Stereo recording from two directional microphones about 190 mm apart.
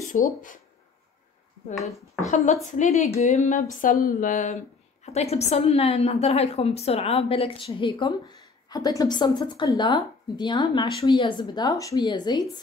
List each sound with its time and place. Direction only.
0.1 s speech: 45° left (ahead or behind)
2.1 s a woman's voice: 40° left (ahead or behind); by 12.4 s 20° left (ahead or behind)